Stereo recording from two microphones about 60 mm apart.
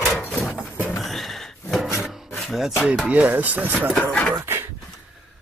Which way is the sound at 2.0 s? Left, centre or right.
Centre.